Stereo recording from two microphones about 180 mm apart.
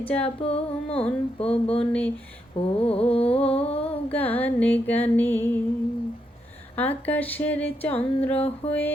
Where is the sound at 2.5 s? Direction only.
30° left (ahead or behind).